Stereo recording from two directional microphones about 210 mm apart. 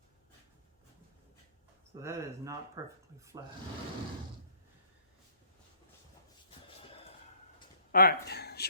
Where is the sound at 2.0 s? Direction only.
15° right (ahead or behind).